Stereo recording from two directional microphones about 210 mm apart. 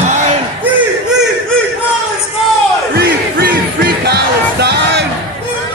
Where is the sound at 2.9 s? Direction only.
45° right (ahead or behind).